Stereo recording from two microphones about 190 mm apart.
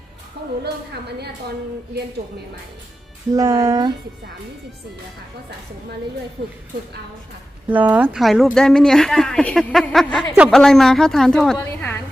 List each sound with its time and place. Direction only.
0.6 s a woman's voice: 60° right (ahead or behind)
3.3 s music: 20° right (ahead or behind)
7.7 s a woman's voice: 10° right (ahead or behind); by 11.9 s 10° left (ahead or behind)